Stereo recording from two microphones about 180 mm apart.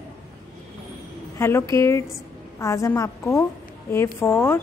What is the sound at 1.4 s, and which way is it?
A woman's voice, 15° left (ahead or behind).